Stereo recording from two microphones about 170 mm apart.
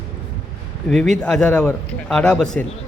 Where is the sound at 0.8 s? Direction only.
5° left (ahead or behind).